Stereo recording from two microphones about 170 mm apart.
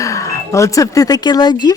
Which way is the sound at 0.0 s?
20° left (ahead or behind).